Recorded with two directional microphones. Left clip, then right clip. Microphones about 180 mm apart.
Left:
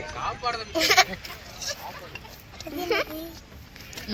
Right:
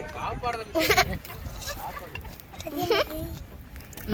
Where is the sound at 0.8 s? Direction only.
30° right (ahead or behind).